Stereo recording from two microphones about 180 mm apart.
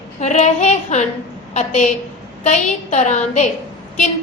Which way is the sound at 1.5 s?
40° left (ahead or behind).